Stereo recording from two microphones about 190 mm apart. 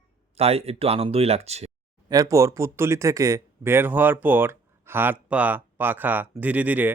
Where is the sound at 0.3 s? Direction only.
30° right (ahead or behind).